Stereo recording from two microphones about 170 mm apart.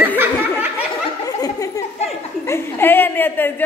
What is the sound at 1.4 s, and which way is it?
A child's voice, 20° left (ahead or behind).